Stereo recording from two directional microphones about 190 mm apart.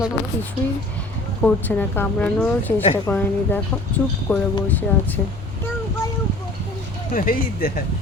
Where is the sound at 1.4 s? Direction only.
10° left (ahead or behind).